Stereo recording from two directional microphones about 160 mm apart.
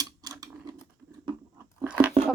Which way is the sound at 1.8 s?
10° right (ahead or behind).